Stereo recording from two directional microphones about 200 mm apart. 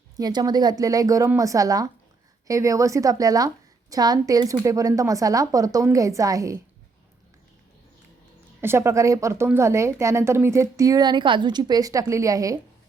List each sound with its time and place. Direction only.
0.2 s a woman's voice: 20° right (ahead or behind)
8.6 s a woman's voice: 15° right (ahead or behind)